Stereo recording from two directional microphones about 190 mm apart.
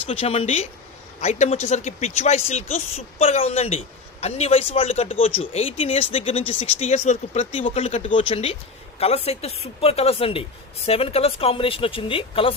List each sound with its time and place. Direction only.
0.1 s speech: 30° left (ahead or behind)